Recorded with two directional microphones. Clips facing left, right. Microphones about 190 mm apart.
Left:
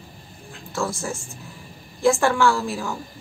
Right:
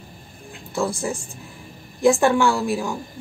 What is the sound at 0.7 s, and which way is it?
A woman's voice, 15° right (ahead or behind).